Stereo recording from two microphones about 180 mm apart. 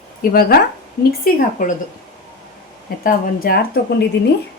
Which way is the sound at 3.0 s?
50° left (ahead or behind).